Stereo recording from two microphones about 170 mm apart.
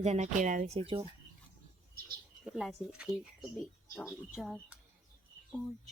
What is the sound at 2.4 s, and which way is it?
Speech, centre (ahead or behind).